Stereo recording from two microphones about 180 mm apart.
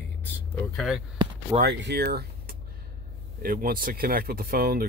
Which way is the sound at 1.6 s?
70° right (ahead or behind).